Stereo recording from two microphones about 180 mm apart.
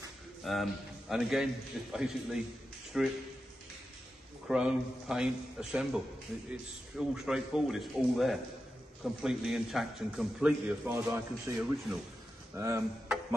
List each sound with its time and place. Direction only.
0.4 s a man's voice: centre (ahead or behind)
4.5 s a man's voice: 5° right (ahead or behind)
11.1 s speech: 15° right (ahead or behind)
12.5 s speech: 15° right (ahead or behind)